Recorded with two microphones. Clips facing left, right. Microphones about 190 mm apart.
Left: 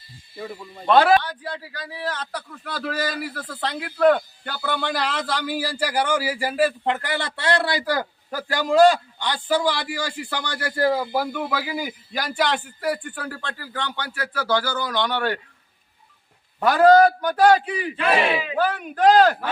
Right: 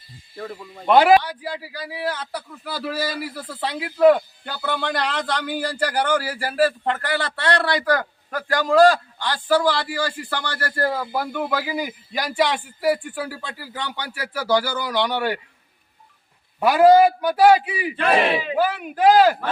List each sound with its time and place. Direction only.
0.3 s a man's voice: 10° left (ahead or behind)
0.9 s a man's voice: 15° right (ahead or behind); by 7.1 s 10° left (ahead or behind)
7.1 s a man's voice: 25° left (ahead or behind); by 15.4 s 10° right (ahead or behind)
16.6 s a man's voice: 10° right (ahead or behind)